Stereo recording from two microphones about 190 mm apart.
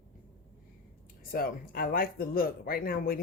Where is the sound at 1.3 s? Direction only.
50° left (ahead or behind).